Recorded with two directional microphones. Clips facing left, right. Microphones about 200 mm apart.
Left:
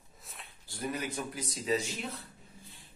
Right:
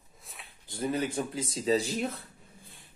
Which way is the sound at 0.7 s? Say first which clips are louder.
Right 6 dB; 25° right (ahead or behind).